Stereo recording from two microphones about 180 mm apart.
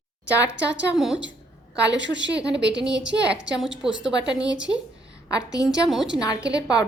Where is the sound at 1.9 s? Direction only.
80° right.